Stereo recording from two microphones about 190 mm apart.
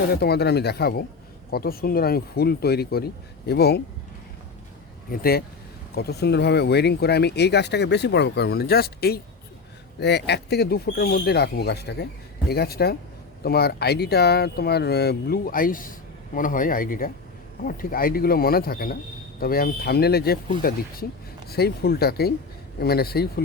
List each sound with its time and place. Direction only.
0.1 s speech: 60° left (ahead or behind)
5.1 s speech: 50° left (ahead or behind)